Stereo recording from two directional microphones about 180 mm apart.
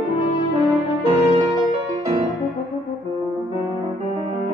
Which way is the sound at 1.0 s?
25° right (ahead or behind).